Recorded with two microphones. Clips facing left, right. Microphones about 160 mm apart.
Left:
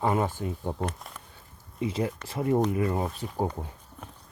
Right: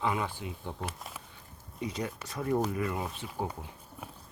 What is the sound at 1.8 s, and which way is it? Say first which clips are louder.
Speech: left 6 dB; 30° left (ahead or behind).